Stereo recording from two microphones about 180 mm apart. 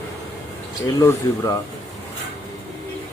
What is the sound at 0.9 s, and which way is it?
Speech, 20° left (ahead or behind).